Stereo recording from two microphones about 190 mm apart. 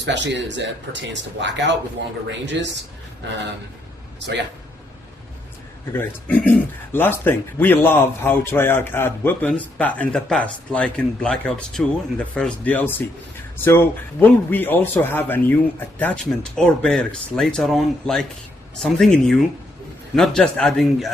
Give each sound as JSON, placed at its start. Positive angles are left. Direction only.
{"t": 0.0, "sound": "speech", "side_deg": -65}
{"t": 5.9, "sound": "a man's voice", "side_deg": 10}